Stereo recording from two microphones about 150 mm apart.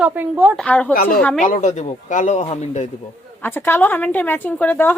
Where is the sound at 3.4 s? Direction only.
15° left (ahead or behind).